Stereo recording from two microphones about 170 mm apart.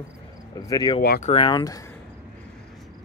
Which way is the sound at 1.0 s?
60° left (ahead or behind).